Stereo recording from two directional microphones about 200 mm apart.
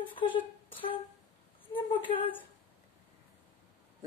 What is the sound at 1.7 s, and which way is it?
Speech, 25° left (ahead or behind).